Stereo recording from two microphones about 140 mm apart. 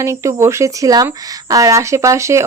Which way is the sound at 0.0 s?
20° right (ahead or behind).